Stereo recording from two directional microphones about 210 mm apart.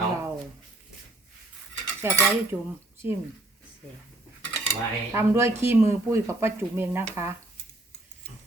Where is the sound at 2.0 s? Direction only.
10° right (ahead or behind).